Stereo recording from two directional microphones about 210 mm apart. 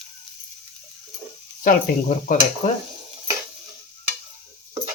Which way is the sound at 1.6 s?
40° left (ahead or behind).